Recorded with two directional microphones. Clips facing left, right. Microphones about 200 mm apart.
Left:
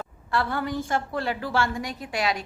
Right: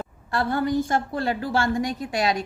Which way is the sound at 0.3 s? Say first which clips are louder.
Right 4 dB; 40° right (ahead or behind).